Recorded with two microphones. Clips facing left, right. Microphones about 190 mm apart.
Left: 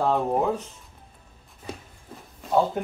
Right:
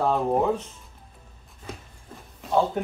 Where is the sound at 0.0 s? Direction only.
Centre (ahead or behind).